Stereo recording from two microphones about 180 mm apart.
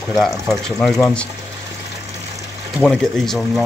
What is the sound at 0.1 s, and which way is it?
Speech, centre (ahead or behind).